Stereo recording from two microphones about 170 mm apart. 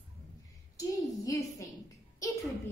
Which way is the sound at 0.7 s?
20° left (ahead or behind).